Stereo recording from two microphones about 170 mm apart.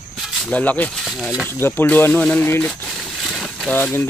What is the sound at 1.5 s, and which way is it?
Speech, 15° left (ahead or behind).